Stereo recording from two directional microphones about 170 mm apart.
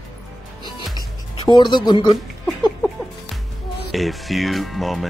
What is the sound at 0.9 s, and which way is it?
Music, 25° left (ahead or behind).